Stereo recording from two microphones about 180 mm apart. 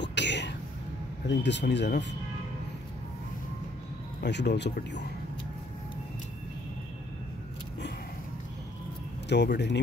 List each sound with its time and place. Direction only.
0.0 s a sound: 75° left (ahead or behind)
1.2 s speech: 75° left (ahead or behind)
4.2 s speech: 70° left (ahead or behind)
9.3 s speech: 75° left (ahead or behind)